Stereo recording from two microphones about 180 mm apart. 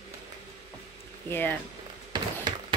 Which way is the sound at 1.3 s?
10° left (ahead or behind).